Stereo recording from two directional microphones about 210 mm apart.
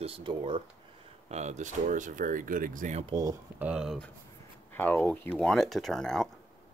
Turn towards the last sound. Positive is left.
turn(degrees=0)  # may be behind; listen again after turning